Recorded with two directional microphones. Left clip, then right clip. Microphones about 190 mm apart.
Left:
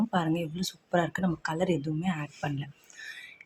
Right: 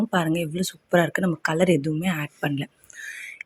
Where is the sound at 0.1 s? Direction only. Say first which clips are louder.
Right 6 dB; 25° right (ahead or behind).